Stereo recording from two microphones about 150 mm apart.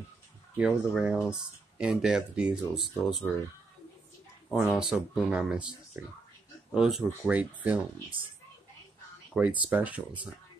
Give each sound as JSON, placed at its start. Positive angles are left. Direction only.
{"t": 0.6, "sound": "speech", "side_deg": -5}
{"t": 4.5, "sound": "speech", "side_deg": -5}
{"t": 9.3, "sound": "speech", "side_deg": -10}